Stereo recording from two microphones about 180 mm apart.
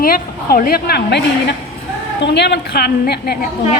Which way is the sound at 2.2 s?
70° left (ahead or behind).